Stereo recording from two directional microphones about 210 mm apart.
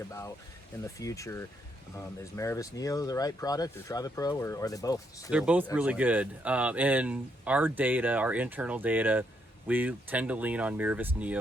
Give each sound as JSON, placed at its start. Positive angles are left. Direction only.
{"t": 0.9, "sound": "speech", "side_deg": 15}
{"t": 5.3, "sound": "speech", "side_deg": -5}